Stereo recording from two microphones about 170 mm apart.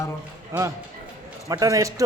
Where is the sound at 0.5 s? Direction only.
15° right (ahead or behind).